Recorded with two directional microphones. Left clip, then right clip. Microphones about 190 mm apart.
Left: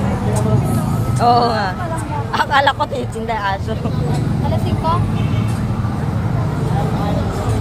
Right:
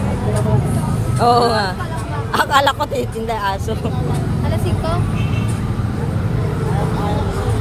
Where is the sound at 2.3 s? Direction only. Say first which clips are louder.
Even; 40° right (ahead or behind).